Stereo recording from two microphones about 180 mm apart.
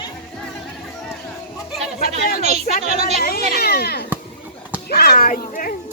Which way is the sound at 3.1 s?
55° left (ahead or behind).